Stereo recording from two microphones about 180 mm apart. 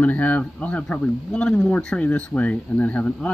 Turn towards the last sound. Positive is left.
turn(degrees=5)  # may be behind; listen again after turning